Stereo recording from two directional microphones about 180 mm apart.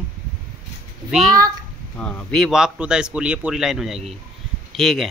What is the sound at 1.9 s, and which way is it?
A man's voice, 5° left (ahead or behind).